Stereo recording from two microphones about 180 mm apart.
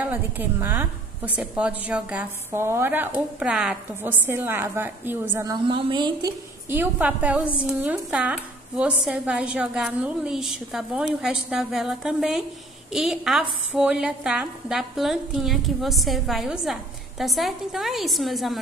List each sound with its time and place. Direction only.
0.0 s a woman's voice: 10° right (ahead or behind)
5.5 s a woman's voice: 30° right (ahead or behind)
6.7 s a woman's voice: 10° right (ahead or behind)